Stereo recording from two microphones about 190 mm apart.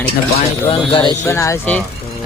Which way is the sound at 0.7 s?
25° left (ahead or behind).